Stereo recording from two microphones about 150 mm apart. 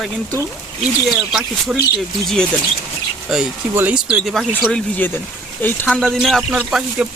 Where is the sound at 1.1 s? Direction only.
5° right (ahead or behind).